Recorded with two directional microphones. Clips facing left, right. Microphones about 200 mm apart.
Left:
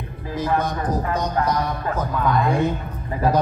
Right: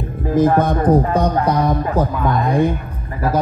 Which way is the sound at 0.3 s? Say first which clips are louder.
Right 9 dB; 50° right (ahead or behind).